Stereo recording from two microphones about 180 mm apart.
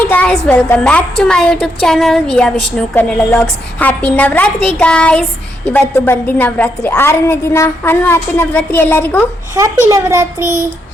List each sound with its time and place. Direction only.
0.0 s a sound: 10° left (ahead or behind)
0.4 s a woman's voice: 10° left (ahead or behind)
9.6 s a child's voice: 15° right (ahead or behind)